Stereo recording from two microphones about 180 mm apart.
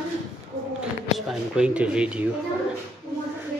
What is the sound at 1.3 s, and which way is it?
Speech, 5° right (ahead or behind).